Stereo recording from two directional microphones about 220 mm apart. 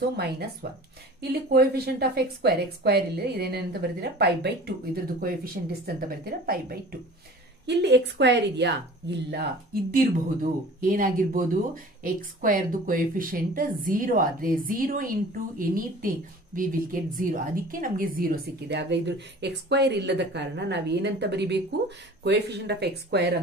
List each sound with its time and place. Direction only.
0.2 s a woman's voice: 45° right (ahead or behind)
10.8 s a woman's voice: 40° right (ahead or behind)